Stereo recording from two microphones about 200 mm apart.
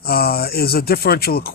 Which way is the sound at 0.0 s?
50° left (ahead or behind).